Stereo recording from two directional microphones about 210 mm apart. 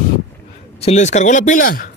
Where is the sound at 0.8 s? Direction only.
35° left (ahead or behind).